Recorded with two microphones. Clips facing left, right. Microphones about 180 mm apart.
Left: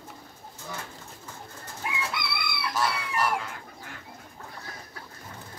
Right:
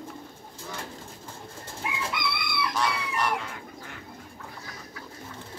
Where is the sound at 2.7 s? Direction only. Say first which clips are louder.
Left 3 dB; 5° left (ahead or behind).